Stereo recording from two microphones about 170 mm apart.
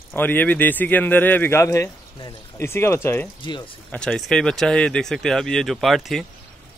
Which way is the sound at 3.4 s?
30° left (ahead or behind).